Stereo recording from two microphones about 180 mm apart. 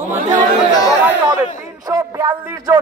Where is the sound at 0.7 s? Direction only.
20° left (ahead or behind).